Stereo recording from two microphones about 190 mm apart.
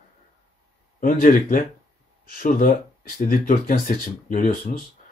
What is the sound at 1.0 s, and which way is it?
Speech, 45° left (ahead or behind).